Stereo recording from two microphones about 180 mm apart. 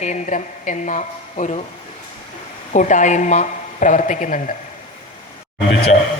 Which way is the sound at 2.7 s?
45° left (ahead or behind).